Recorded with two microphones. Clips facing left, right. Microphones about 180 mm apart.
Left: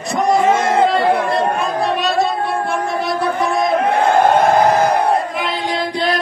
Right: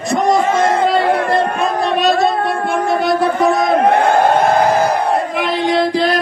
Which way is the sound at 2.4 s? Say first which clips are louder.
Right 2 dB; 80° right.